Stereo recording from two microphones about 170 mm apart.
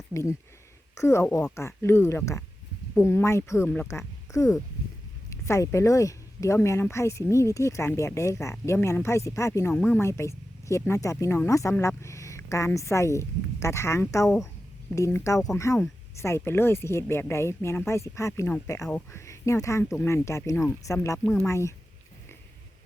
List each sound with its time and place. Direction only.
0.1 s speech: 15° left (ahead or behind)